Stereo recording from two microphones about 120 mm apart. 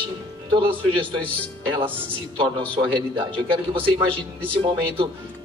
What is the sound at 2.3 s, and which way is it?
Speech, 40° right (ahead or behind).